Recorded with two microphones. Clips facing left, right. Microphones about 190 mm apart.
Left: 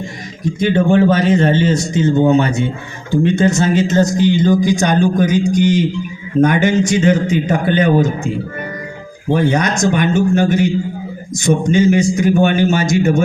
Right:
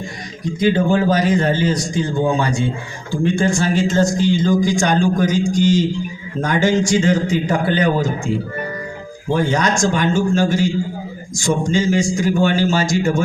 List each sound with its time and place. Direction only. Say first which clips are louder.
0.7 s a man's voice: left 4 dB; 25° left (ahead or behind)
9.3 s a man's voice: left 3 dB; 20° left (ahead or behind)
12.3 s a man's voice: left 3 dB; 60° left (ahead or behind)
12.7 s a man's voice: left 3 dB; 20° left (ahead or behind)